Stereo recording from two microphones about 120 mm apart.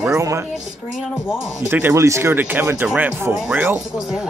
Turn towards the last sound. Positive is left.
turn(degrees=-10)  # may be behind; listen again after turning